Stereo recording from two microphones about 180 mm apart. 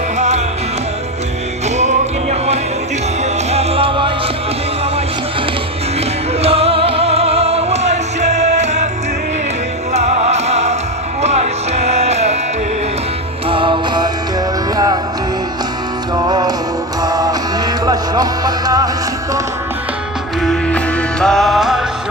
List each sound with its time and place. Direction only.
0.2 s music: 40° right (ahead or behind)
1.7 s music: 40° right (ahead or behind)
6.4 s music: 35° right (ahead or behind)
9.9 s music: 35° right (ahead or behind)
13.5 s music: 25° right (ahead or behind)
16.3 s music: 20° right (ahead or behind)
20.4 s music: 5° left (ahead or behind)